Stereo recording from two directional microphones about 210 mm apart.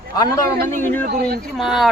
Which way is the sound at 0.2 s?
15° left (ahead or behind).